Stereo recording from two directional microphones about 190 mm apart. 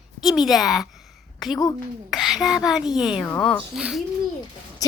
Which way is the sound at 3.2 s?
10° left (ahead or behind).